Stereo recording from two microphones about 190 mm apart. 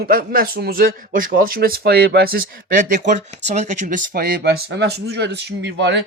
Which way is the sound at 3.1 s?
35° right (ahead or behind).